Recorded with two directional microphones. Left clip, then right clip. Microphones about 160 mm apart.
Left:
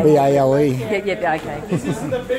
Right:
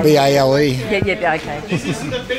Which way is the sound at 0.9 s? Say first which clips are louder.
Right 5 dB; 40° right (ahead or behind).